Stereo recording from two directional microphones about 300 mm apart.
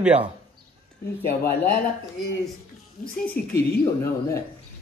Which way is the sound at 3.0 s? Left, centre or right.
Centre.